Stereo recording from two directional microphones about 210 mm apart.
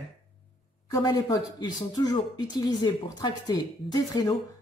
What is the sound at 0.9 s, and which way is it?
A woman's voice, 15° left (ahead or behind).